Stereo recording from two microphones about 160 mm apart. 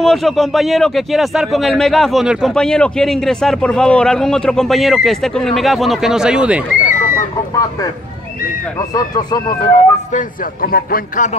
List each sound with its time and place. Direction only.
0.0 s speech: centre (ahead or behind)
6.9 s a sound: 55° left (ahead or behind)
8.7 s speech: 25° left (ahead or behind)
10.1 s a man's voice: 65° left (ahead or behind)